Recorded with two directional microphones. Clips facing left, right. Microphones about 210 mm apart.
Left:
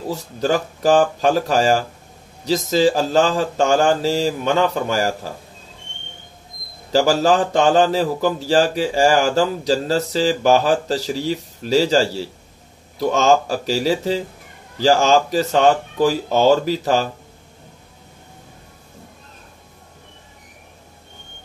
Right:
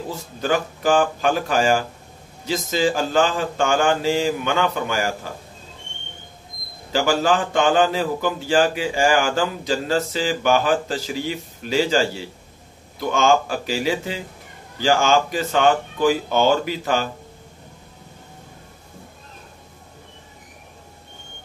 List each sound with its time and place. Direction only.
0.1 s a man's voice: 35° left (ahead or behind)
6.9 s a man's voice: 35° left (ahead or behind)